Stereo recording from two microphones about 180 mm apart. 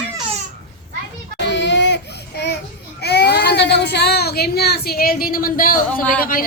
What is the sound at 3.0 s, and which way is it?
Speech, 65° left (ahead or behind).